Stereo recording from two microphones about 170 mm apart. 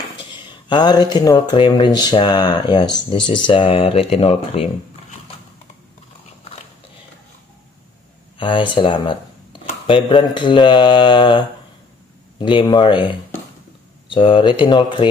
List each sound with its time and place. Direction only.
0.3 s speech: 25° left (ahead or behind)
8.4 s speech: 30° left (ahead or behind)